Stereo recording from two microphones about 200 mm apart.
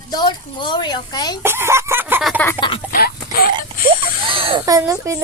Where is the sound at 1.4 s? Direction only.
10° right (ahead or behind).